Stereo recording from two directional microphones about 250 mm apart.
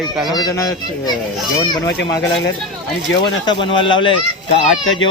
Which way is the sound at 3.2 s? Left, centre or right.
Centre.